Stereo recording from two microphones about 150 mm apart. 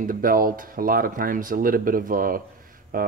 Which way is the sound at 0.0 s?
70° right (ahead or behind).